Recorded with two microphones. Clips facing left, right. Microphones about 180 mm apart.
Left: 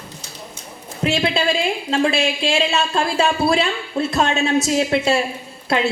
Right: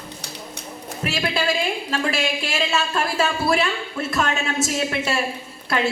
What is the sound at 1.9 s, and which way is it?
Speech, 25° left (ahead or behind).